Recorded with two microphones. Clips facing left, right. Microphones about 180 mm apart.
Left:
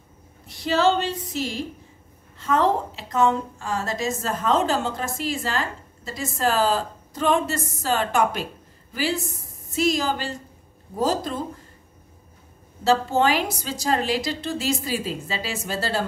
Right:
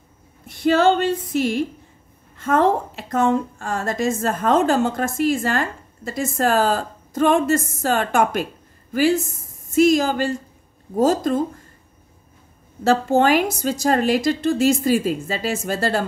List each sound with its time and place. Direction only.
0.5 s a woman's voice: 55° right (ahead or behind)
12.8 s a woman's voice: 50° right (ahead or behind)